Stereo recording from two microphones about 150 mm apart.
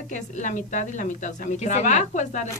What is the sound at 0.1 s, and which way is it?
Speech, 55° left (ahead or behind).